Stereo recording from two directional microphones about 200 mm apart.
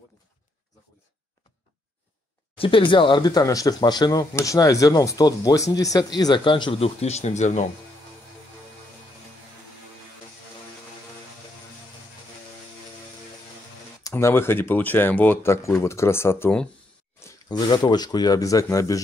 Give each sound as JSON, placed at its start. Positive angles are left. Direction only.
{"t": 2.5, "sound": "speech", "side_deg": 25}
{"t": 14.0, "sound": "speech", "side_deg": 15}
{"t": 17.2, "sound": "speech", "side_deg": 20}